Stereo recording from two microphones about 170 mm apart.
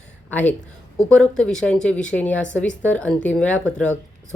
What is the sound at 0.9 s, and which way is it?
Speech, 5° left (ahead or behind).